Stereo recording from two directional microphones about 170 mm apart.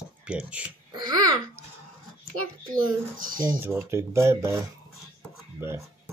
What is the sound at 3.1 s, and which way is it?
Speech, 55° right (ahead or behind).